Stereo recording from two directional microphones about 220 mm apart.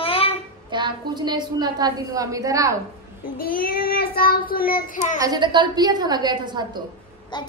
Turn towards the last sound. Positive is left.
turn(degrees=-20)  # may be behind; listen again after turning